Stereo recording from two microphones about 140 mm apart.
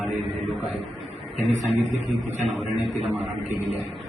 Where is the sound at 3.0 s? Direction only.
55° right (ahead or behind).